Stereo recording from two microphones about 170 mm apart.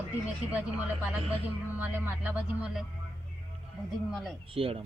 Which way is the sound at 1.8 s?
10° right (ahead or behind).